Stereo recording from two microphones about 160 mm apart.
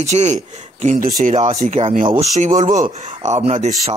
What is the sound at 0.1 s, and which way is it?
Speech, 45° right (ahead or behind).